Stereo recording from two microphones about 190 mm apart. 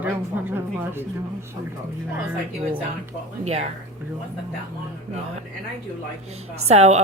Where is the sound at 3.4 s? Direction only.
35° right (ahead or behind).